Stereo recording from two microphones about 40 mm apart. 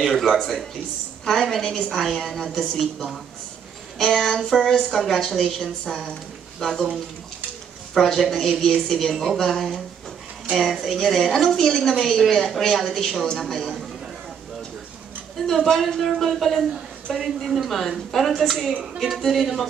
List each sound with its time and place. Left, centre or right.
0.0 s a woman's voice: centre
11.4 s a woman's voice: centre
15.6 s speech: centre
18.8 s a sound: centre
19.1 s speech: centre